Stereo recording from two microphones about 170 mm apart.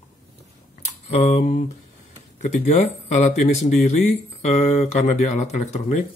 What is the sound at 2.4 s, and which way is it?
Speech, 45° left (ahead or behind).